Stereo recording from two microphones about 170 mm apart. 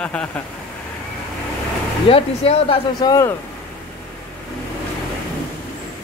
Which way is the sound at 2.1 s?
35° left (ahead or behind).